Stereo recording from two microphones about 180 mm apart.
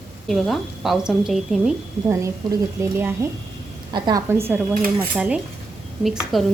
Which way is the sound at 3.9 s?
25° right (ahead or behind).